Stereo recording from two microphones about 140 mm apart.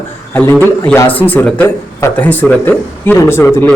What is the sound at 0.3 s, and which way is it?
A man's voice, 10° left (ahead or behind).